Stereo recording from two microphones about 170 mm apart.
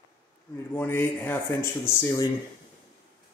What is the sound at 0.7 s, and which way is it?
Speech, 15° left (ahead or behind).